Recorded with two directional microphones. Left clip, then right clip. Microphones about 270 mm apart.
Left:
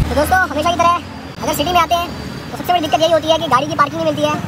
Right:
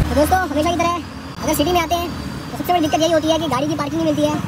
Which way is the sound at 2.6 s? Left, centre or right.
Left.